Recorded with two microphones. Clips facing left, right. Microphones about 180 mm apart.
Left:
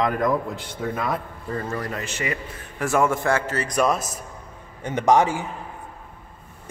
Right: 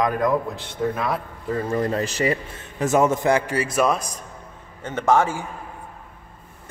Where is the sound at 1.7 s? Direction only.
25° right (ahead or behind).